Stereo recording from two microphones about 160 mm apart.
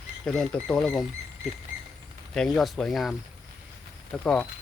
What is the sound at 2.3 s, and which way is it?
Speech, 5° left (ahead or behind).